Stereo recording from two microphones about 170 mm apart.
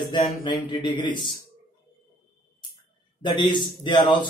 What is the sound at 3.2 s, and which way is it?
A man's voice, 25° left (ahead or behind).